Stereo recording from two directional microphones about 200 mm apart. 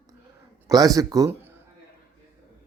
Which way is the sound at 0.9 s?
15° right (ahead or behind).